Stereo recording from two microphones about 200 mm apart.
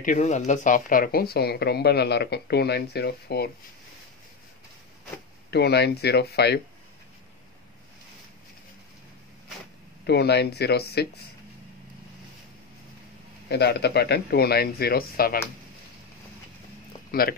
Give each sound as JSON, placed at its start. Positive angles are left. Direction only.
{"t": 0.0, "sound": "speech", "side_deg": 35}
{"t": 5.5, "sound": "speech", "side_deg": 55}
{"t": 10.0, "sound": "speech", "side_deg": 55}
{"t": 13.5, "sound": "speech", "side_deg": 55}
{"t": 17.1, "sound": "speech", "side_deg": 50}